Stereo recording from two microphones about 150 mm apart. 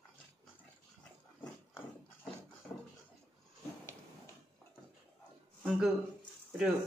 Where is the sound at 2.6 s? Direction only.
5° left (ahead or behind).